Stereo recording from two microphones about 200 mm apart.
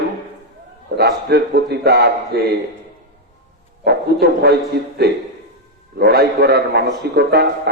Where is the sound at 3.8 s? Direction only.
55° right (ahead or behind).